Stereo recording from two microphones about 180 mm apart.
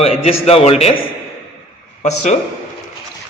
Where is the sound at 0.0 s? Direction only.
30° left (ahead or behind).